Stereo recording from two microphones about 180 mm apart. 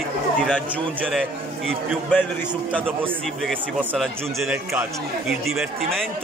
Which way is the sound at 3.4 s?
Centre (ahead or behind).